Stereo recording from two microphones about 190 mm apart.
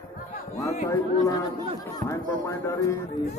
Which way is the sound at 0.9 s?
20° left (ahead or behind).